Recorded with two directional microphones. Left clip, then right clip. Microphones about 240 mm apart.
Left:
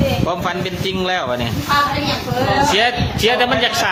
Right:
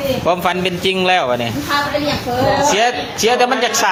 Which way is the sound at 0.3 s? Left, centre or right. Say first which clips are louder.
Right 5 dB; centre.